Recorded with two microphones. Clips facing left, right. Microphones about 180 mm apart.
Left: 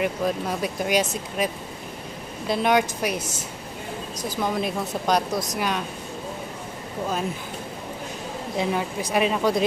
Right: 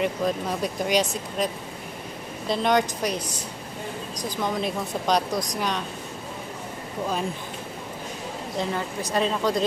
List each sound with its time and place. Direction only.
0.0 s speech: 5° left (ahead or behind)
3.2 s a woman's voice: 25° left (ahead or behind)
4.1 s speech: 5° left (ahead or behind)
8.5 s speech: 10° left (ahead or behind)